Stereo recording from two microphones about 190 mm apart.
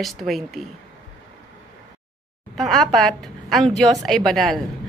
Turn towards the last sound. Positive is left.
turn(degrees=0)  # may be behind; listen again after turning